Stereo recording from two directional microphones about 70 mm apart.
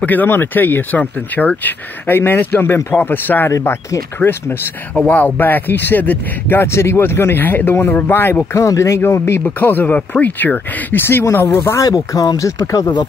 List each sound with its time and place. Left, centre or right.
0.0 s speech: left
3.4 s speech: left
4.2 s speech: left
8.5 s speech: left
11.8 s speech: left